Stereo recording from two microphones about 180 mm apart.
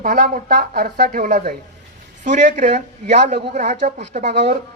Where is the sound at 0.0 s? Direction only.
50° right (ahead or behind).